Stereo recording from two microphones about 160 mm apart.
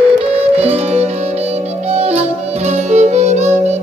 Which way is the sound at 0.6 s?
40° right (ahead or behind).